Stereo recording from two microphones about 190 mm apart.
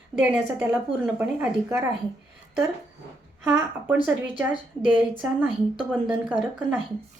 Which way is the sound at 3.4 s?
10° right (ahead or behind).